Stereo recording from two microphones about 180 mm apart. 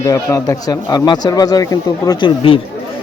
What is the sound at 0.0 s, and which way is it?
A man's voice, 20° left (ahead or behind).